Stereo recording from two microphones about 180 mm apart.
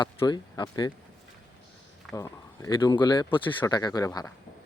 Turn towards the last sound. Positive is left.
turn(degrees=20)  # may be behind; listen again after turning